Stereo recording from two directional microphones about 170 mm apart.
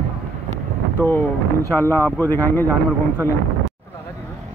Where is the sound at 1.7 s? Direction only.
15° left (ahead or behind).